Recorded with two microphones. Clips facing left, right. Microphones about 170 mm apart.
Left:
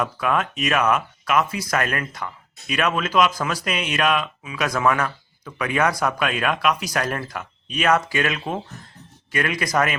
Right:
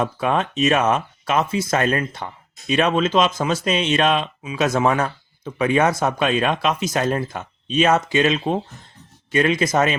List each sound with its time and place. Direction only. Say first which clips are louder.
0.0 s speech: right 2 dB; 30° right (ahead or behind)